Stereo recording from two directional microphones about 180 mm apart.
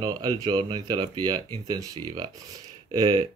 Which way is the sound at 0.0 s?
20° right (ahead or behind).